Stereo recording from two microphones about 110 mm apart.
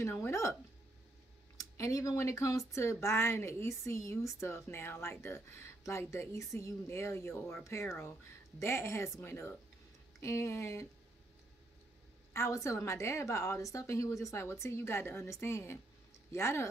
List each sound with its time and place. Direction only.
0.0 s speech: 20° left (ahead or behind)
1.6 s speech: 30° left (ahead or behind)
12.4 s speech: 30° left (ahead or behind)